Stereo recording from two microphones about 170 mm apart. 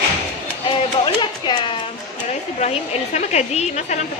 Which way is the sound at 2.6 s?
40° left (ahead or behind).